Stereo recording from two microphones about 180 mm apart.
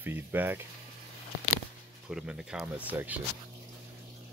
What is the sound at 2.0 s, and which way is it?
Speech, 5° right (ahead or behind).